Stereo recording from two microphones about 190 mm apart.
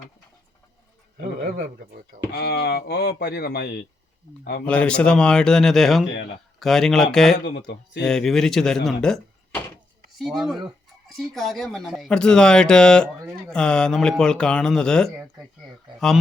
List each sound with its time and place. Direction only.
2.3 s speech: 55° left (ahead or behind)
4.7 s speech: 5° left (ahead or behind)
7.4 s speech: 60° left (ahead or behind)
8.0 s speech: centre (ahead or behind)